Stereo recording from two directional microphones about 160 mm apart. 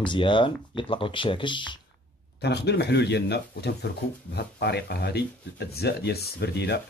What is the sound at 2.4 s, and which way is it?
Speech, 90° left.